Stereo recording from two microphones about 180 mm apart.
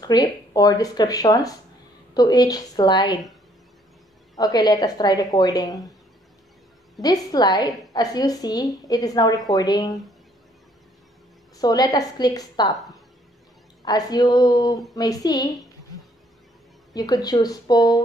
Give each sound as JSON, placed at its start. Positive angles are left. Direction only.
{"t": 0.0, "sound": "a woman's voice", "side_deg": 20}
{"t": 4.4, "sound": "a woman's voice", "side_deg": 20}
{"t": 7.0, "sound": "a woman's voice", "side_deg": 20}
{"t": 11.5, "sound": "a woman's voice", "side_deg": 20}
{"t": 13.8, "sound": "a woman's voice", "side_deg": 20}
{"t": 16.9, "sound": "a woman's voice", "side_deg": 20}